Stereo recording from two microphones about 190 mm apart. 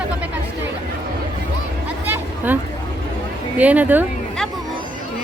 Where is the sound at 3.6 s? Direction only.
10° right (ahead or behind).